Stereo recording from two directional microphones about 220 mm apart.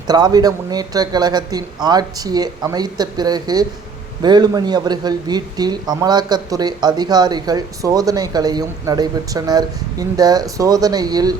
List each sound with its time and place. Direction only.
0.1 s speech: 20° right (ahead or behind)